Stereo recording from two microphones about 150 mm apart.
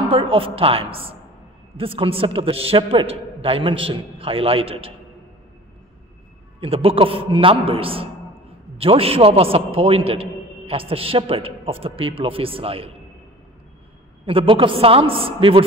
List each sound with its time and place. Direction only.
0.1 s a man's voice: 35° right (ahead or behind)
6.6 s a man's voice: 40° right (ahead or behind)
14.2 s a man's voice: 35° right (ahead or behind)